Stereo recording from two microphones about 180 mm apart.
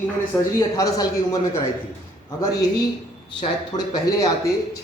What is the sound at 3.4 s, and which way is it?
Speech, 20° left (ahead or behind).